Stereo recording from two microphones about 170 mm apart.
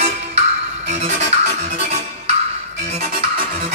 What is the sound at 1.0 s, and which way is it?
Music, 40° right (ahead or behind).